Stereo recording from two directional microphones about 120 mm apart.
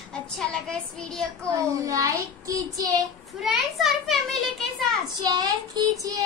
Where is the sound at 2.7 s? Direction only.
30° right (ahead or behind).